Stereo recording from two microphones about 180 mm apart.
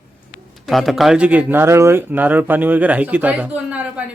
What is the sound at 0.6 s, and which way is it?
Speech, centre (ahead or behind).